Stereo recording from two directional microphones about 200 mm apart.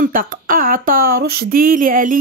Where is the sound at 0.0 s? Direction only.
45° right (ahead or behind).